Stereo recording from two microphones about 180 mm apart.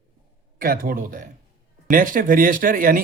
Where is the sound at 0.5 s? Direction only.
55° right (ahead or behind).